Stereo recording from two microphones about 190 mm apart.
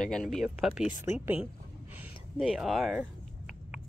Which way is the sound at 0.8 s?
40° left (ahead or behind).